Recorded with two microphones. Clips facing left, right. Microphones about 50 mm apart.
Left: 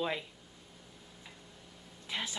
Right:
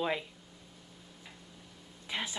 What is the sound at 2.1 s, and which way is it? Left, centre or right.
Speech, centre.